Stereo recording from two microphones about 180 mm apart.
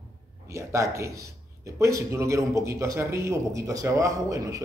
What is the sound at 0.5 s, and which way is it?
Speech, 15° right (ahead or behind).